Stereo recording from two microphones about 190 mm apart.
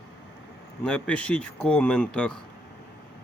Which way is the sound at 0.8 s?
5° left (ahead or behind).